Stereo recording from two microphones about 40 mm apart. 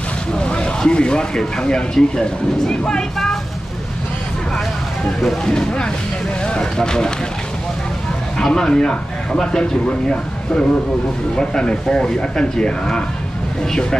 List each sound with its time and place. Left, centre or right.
0.3 s a sound: left
0.7 s speech: left
5.4 s speech: centre
8.4 s speech: centre